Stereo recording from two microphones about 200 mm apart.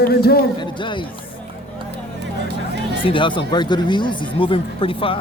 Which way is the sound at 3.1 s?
25° left (ahead or behind).